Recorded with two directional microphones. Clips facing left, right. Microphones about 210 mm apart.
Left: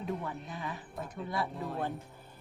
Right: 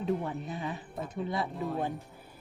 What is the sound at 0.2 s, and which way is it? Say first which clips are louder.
Speech: right 4 dB; 25° right (ahead or behind).